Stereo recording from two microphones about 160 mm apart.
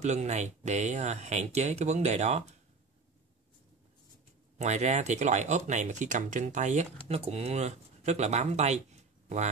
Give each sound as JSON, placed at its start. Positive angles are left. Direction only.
{"t": 0.0, "sound": "speech", "side_deg": -45}
{"t": 4.6, "sound": "speech", "side_deg": -45}